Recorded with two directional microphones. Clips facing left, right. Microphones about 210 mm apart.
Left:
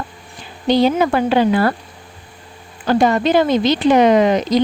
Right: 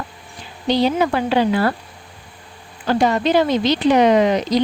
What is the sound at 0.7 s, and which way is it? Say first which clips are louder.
Speech: left 3 dB; 50° left (ahead or behind).